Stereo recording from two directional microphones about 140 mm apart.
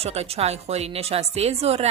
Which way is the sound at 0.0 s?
45° right (ahead or behind).